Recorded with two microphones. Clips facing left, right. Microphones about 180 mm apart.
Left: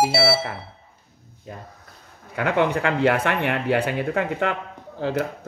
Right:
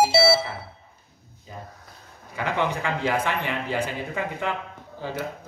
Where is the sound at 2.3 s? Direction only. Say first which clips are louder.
Left 5 dB; 60° left (ahead or behind).